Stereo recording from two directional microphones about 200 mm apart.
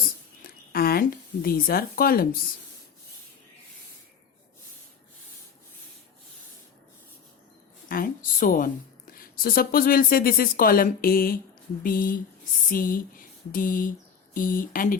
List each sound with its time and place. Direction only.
0.4 s speech: 50° left (ahead or behind)
7.9 s a woman's voice: 45° left (ahead or behind)
12.7 s a sound: 45° left (ahead or behind)
14.3 s speech: 45° left (ahead or behind)